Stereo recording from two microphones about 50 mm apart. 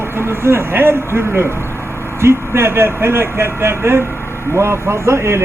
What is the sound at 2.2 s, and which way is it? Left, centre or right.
Speech, right.